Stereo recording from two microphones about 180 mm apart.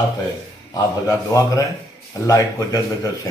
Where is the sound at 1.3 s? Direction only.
20° left (ahead or behind).